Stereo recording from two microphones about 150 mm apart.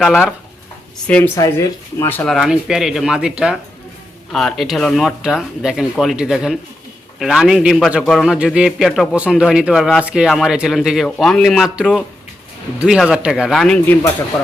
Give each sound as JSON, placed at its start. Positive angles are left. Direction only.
{"t": 0.0, "sound": "a man's voice", "side_deg": 0}
{"t": 1.0, "sound": "speech", "side_deg": 10}
{"t": 1.4, "sound": "speech", "side_deg": 20}
{"t": 2.3, "sound": "a man's voice", "side_deg": 0}